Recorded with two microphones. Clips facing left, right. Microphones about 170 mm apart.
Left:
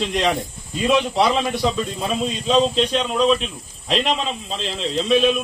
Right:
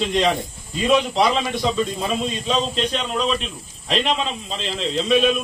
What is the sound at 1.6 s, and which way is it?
A man's voice, centre (ahead or behind).